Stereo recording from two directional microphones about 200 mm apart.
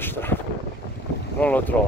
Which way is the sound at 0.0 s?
10° left (ahead or behind).